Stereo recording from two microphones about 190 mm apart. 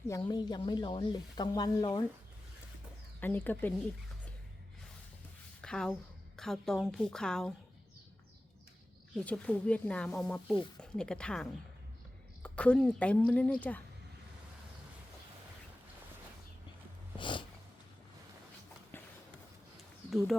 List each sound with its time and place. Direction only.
0.1 s speech: 20° left (ahead or behind)
3.2 s a woman's voice: 10° left (ahead or behind)
5.6 s a woman's voice: 5° left (ahead or behind)
9.2 s a woman's voice: 5° left (ahead or behind)
17.2 s a sound: 25° left (ahead or behind)
20.1 s speech: centre (ahead or behind)